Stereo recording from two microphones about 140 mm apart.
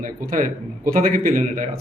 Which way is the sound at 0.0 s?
75° right (ahead or behind).